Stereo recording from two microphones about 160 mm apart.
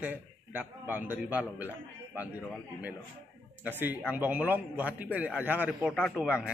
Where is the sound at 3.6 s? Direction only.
10° right (ahead or behind).